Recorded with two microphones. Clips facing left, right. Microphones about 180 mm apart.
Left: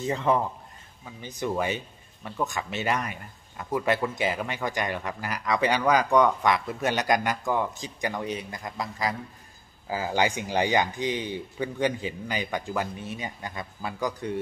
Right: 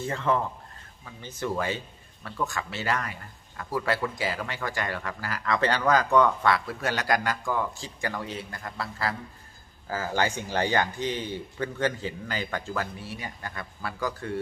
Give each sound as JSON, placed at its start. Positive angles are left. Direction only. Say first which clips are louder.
{"t": 0.0, "sound": "speech", "louder": "left 2 dB", "side_deg": 20}